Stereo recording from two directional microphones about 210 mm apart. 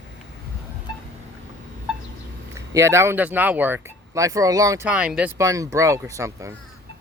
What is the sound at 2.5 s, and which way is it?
Speech, 15° right (ahead or behind).